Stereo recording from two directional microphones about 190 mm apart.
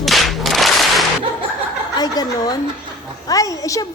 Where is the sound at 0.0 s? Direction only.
Centre (ahead or behind).